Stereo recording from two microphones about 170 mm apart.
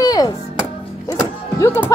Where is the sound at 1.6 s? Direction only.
15° left (ahead or behind).